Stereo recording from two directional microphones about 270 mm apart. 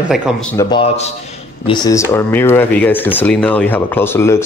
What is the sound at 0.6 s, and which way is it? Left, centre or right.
Speech, centre.